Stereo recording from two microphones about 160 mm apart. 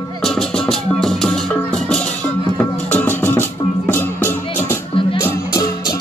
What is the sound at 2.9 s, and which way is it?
Music, 10° left (ahead or behind).